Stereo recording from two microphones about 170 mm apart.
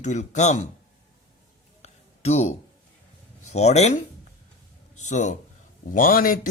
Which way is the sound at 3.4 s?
40° left (ahead or behind).